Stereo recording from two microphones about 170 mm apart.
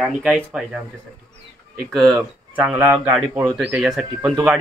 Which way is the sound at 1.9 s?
Centre (ahead or behind).